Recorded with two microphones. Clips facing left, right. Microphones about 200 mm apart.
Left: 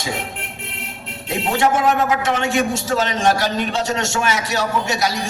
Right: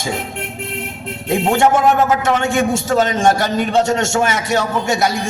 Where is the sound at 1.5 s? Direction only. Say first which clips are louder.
Right 2 dB; 50° right (ahead or behind).